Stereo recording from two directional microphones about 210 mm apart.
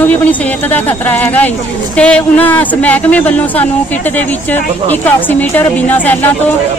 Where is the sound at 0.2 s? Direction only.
10° left (ahead or behind).